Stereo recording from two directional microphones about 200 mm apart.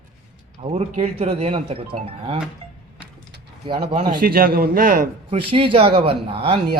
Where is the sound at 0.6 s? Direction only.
30° right (ahead or behind).